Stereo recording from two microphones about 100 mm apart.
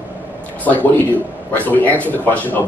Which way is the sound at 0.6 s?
15° left (ahead or behind).